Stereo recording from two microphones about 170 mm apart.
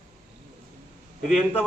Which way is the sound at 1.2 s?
5° left (ahead or behind).